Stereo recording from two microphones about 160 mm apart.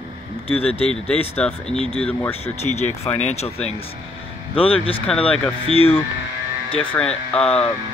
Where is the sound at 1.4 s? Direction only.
5° left (ahead or behind).